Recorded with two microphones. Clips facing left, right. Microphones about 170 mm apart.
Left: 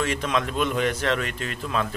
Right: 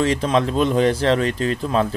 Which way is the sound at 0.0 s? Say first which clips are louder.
Right 7 dB; 35° right (ahead or behind).